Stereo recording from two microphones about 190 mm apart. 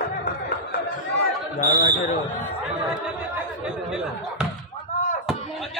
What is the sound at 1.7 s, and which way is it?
Speech, 20° right (ahead or behind).